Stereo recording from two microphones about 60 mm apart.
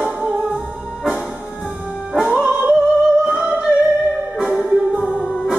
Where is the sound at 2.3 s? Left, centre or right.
Right.